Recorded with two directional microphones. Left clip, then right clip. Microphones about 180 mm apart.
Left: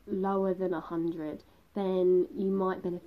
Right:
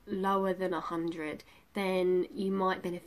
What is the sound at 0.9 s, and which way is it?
Speech, 30° right (ahead or behind).